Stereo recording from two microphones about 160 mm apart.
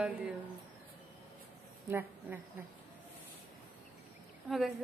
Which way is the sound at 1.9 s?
10° right (ahead or behind).